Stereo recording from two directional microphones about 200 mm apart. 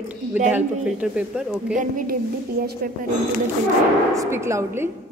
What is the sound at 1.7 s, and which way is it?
A woman's voice, 45° right (ahead or behind).